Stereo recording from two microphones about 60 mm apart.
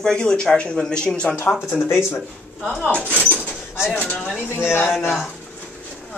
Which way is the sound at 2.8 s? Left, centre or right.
Left.